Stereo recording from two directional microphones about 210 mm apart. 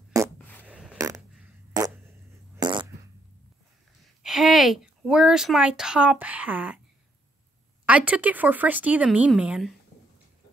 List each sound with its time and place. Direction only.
0.1 s a sound: 15° right (ahead or behind)
0.9 s fart: 15° right (ahead or behind)
4.0 s speech: centre (ahead or behind)
7.8 s speech: 5° right (ahead or behind)